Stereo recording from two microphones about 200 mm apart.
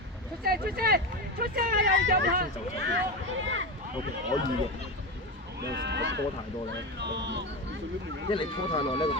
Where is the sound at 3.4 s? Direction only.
70° right (ahead or behind).